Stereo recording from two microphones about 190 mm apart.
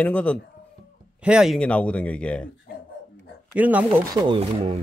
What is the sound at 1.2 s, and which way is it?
A man's voice, 5° right (ahead or behind).